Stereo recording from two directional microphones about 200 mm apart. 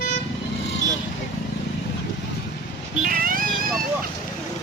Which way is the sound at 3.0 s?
45° right (ahead or behind).